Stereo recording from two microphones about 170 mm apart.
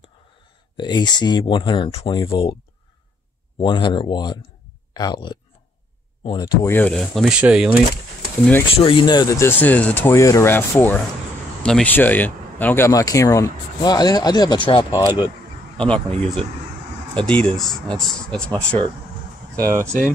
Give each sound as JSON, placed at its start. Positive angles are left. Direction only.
{"t": 0.7, "sound": "speech", "side_deg": 25}
{"t": 3.5, "sound": "speech", "side_deg": 30}
{"t": 8.7, "sound": "speech", "side_deg": 30}
{"t": 15.8, "sound": "speech", "side_deg": 5}
{"t": 19.5, "sound": "speech", "side_deg": -20}